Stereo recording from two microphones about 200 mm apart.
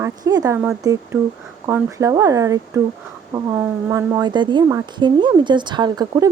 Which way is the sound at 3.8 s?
15° right (ahead or behind).